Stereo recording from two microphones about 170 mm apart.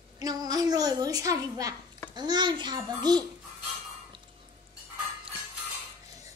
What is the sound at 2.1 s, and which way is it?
A child's voice, 25° right (ahead or behind).